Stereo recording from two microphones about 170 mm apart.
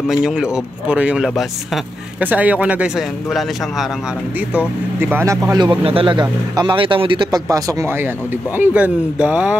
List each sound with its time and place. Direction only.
0.1 s speech: 5° right (ahead or behind)
4.6 s speech: 10° right (ahead or behind)
5.6 s speech: 30° right (ahead or behind)
8.5 s speech: 10° right (ahead or behind)